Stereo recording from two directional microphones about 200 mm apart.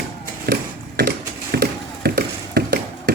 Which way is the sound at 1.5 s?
50° right (ahead or behind).